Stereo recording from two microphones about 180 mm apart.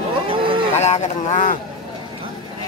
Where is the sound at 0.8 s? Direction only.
40° left (ahead or behind).